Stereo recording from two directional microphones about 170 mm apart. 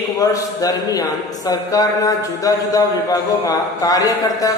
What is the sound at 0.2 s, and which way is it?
Speech, 20° left (ahead or behind).